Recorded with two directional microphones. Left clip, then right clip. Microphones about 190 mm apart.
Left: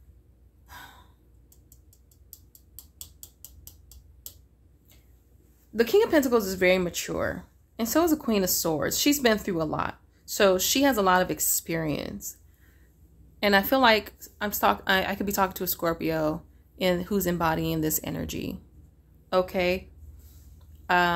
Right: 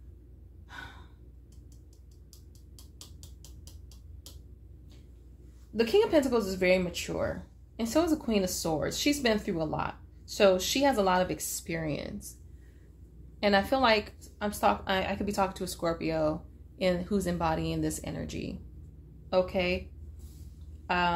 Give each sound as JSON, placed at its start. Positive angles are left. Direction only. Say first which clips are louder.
{"t": 2.7, "sound": "tick-tock", "louder": "left 3 dB", "side_deg": 25}
{"t": 5.8, "sound": "speech", "louder": "left 3 dB", "side_deg": 45}
{"t": 13.4, "sound": "a woman's voice", "louder": "left 4 dB", "side_deg": 45}
{"t": 20.8, "sound": "a sound", "louder": "left 6 dB", "side_deg": 45}